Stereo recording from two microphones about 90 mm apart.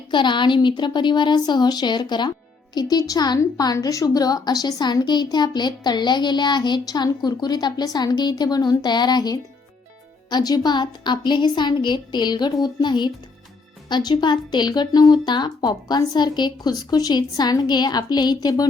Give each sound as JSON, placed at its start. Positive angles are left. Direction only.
{"t": 0.1, "sound": "a woman's voice", "side_deg": 60}
{"t": 2.9, "sound": "a woman's voice", "side_deg": 45}